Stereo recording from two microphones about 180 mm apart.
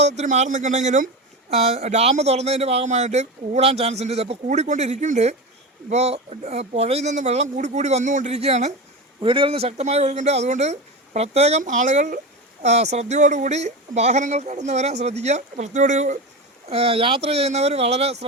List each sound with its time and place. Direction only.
0.0 s speech: 40° right (ahead or behind)
16.6 s speech: 35° right (ahead or behind)